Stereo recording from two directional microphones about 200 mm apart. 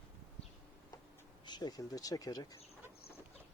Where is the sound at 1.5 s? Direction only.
20° left (ahead or behind).